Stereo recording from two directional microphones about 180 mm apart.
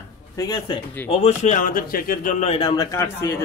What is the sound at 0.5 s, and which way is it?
Speech, 30° left (ahead or behind).